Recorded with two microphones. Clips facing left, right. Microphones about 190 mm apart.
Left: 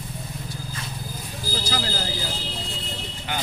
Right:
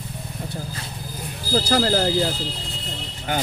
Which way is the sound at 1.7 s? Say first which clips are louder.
Right 9 dB; 60° right (ahead or behind).